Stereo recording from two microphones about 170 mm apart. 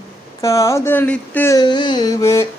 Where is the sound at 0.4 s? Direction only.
15° left (ahead or behind).